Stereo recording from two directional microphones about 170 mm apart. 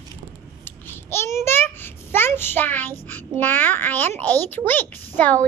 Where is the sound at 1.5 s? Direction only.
15° left (ahead or behind).